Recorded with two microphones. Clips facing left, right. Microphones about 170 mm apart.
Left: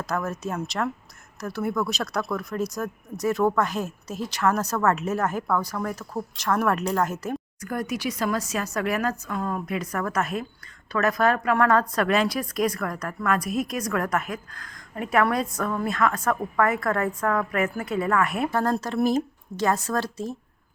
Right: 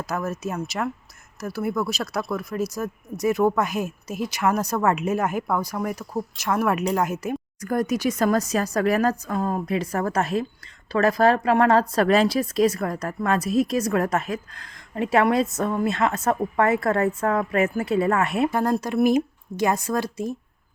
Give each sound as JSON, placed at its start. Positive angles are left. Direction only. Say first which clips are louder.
{"t": 0.0, "sound": "a woman's voice", "louder": "right 1 dB", "side_deg": -5}
{"t": 7.6, "sound": "a woman's voice", "louder": "right 7 dB", "side_deg": -40}